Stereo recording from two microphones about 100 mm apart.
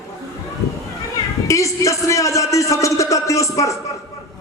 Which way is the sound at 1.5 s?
30° left (ahead or behind).